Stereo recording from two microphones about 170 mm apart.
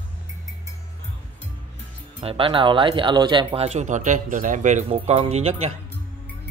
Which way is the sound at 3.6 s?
45° right (ahead or behind).